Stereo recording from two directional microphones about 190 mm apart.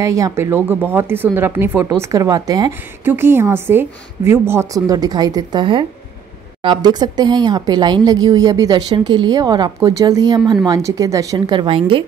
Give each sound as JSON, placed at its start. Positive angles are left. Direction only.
{"t": 0.0, "sound": "speech", "side_deg": -15}